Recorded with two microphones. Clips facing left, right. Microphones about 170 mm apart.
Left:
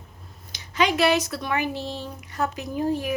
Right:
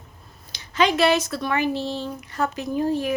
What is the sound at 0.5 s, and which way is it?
A woman's voice, 15° left (ahead or behind).